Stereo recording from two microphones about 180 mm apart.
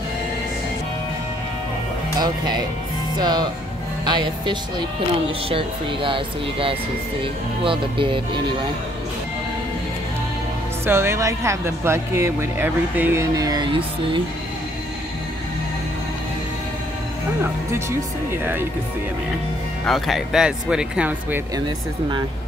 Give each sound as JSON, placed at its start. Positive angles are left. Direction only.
{"t": 2.1, "sound": "speech", "side_deg": -25}
{"t": 10.9, "sound": "speech", "side_deg": -15}
{"t": 18.3, "sound": "speech", "side_deg": -10}
{"t": 19.9, "sound": "speech", "side_deg": 0}
{"t": 21.5, "sound": "speech", "side_deg": -25}